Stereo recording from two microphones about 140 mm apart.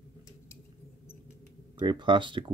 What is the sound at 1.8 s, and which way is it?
Speech, 35° right (ahead or behind).